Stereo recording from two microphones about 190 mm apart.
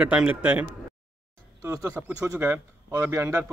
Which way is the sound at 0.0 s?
5° right (ahead or behind).